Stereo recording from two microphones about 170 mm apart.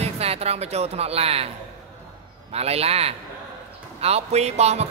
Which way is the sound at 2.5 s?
35° right (ahead or behind).